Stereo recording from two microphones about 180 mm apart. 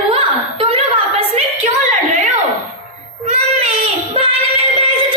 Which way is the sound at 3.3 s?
35° right (ahead or behind).